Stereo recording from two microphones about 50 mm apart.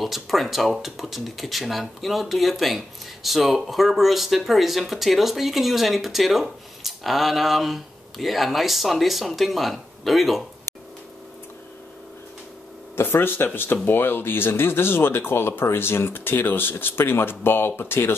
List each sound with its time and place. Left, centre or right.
0.0 s speech: centre
12.9 s speech: left